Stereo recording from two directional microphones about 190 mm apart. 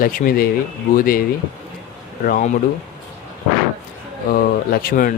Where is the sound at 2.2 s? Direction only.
45° left (ahead or behind).